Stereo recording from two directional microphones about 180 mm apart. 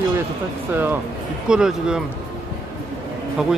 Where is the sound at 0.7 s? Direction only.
10° right (ahead or behind).